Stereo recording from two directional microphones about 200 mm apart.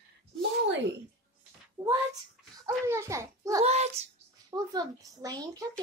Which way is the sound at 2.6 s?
15° right (ahead or behind).